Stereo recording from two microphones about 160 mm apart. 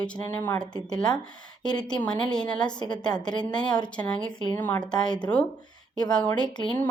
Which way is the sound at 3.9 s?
5° left (ahead or behind).